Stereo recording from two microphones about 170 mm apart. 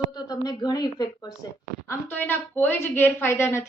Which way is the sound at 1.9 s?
10° left (ahead or behind).